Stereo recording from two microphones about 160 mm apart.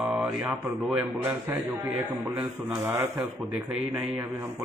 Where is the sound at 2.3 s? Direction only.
10° right (ahead or behind).